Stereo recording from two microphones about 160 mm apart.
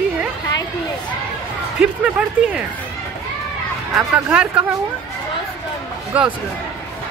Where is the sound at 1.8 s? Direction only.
10° right (ahead or behind).